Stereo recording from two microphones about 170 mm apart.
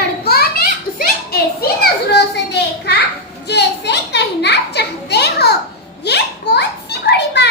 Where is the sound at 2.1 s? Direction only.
85° left.